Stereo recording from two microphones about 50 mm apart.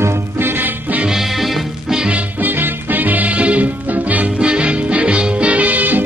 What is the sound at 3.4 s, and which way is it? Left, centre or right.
Music, right.